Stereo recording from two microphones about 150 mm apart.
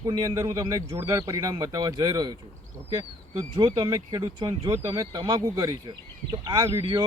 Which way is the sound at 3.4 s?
25° right (ahead or behind).